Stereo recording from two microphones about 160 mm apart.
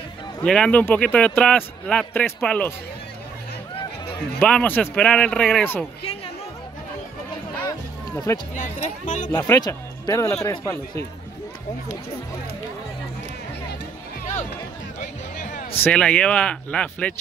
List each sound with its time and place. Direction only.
0.4 s a man's voice: 5° left (ahead or behind)
4.4 s a man's voice: 10° left (ahead or behind)
8.5 s speech: 50° left (ahead or behind)
9.3 s speech: 25° left (ahead or behind)
15.0 s music: 55° left (ahead or behind)
15.8 s a man's voice: 5° left (ahead or behind)